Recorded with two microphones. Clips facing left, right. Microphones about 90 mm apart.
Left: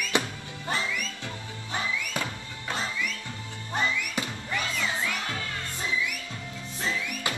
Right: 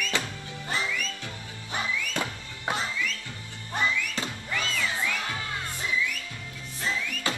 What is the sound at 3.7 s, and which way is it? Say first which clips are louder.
Music: even; 15° left (ahead or behind).